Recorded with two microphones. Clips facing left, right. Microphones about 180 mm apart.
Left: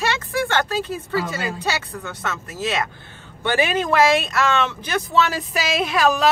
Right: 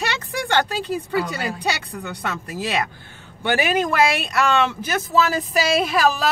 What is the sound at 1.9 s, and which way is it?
Speech, 15° right (ahead or behind).